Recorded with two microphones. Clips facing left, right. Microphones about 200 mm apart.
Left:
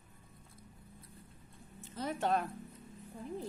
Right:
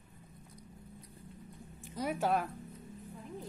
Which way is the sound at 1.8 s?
10° right (ahead or behind).